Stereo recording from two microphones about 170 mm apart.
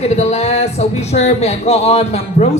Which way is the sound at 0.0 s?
40° left (ahead or behind).